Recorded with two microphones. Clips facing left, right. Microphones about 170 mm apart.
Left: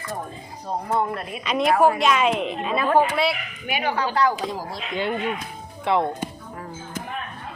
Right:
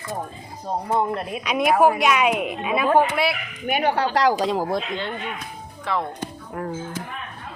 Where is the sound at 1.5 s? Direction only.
10° right (ahead or behind).